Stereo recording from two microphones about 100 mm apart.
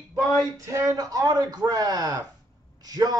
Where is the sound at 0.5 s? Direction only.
35° right (ahead or behind).